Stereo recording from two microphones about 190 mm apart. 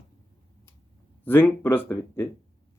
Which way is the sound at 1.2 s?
10° left (ahead or behind).